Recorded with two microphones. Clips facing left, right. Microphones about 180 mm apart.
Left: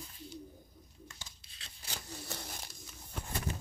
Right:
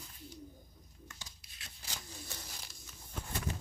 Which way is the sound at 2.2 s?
65° left (ahead or behind).